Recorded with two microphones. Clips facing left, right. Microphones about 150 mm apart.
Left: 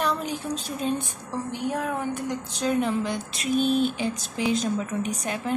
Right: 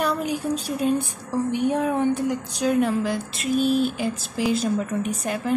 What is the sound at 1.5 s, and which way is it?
Speech, 20° right (ahead or behind).